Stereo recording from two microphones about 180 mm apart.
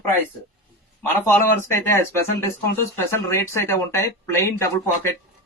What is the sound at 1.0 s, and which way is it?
Speech, 10° left (ahead or behind).